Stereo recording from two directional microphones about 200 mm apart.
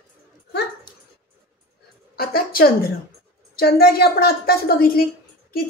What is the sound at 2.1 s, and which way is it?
A woman's voice, 50° left (ahead or behind).